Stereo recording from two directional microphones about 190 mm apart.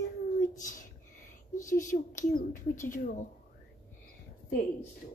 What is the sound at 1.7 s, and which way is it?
Speech, 40° left (ahead or behind).